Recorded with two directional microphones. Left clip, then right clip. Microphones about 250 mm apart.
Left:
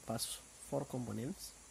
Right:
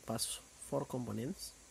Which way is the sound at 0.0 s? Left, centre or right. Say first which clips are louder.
Right 1 dB; centre.